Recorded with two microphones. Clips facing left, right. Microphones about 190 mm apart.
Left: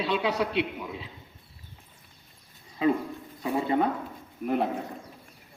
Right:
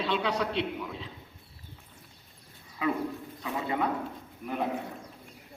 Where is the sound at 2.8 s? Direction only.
25° left (ahead or behind).